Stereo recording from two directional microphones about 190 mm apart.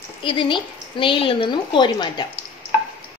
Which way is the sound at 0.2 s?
25° left (ahead or behind).